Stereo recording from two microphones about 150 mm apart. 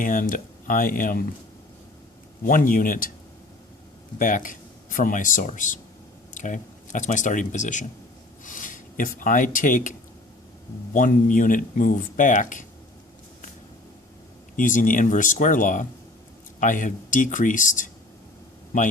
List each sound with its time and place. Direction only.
0.0 s speech: 60° left (ahead or behind)
2.4 s speech: 65° left (ahead or behind)
4.2 s speech: 60° left (ahead or behind)
10.9 s speech: 60° left (ahead or behind)
14.5 s speech: 60° left (ahead or behind)